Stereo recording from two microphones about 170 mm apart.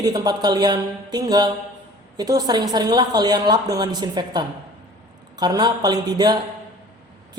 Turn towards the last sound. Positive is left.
turn(degrees=-25)  # may be behind; listen again after turning